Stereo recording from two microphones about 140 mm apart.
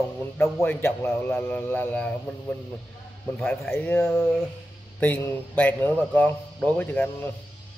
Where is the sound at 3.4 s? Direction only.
15° left (ahead or behind).